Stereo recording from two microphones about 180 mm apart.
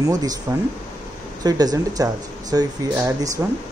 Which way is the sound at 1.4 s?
20° right (ahead or behind).